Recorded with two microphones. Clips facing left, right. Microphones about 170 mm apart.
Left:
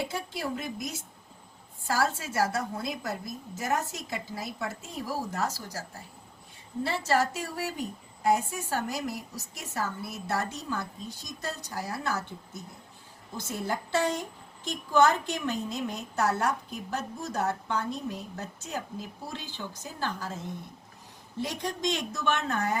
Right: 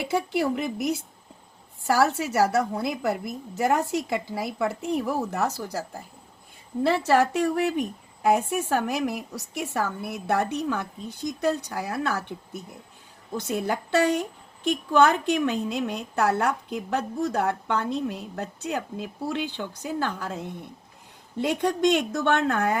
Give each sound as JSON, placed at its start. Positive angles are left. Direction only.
{"t": 0.3, "sound": "a woman's voice", "side_deg": -65}
{"t": 6.8, "sound": "a woman's voice", "side_deg": -65}
{"t": 13.3, "sound": "a woman's voice", "side_deg": -65}
{"t": 21.5, "sound": "a woman's voice", "side_deg": -60}